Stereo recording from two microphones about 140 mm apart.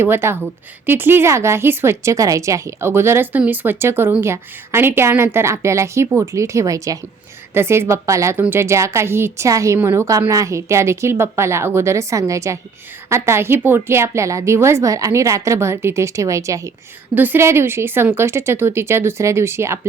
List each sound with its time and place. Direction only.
0.0 s a woman's voice: 15° right (ahead or behind)